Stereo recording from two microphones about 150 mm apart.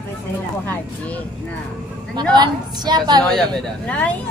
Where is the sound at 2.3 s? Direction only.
30° right (ahead or behind).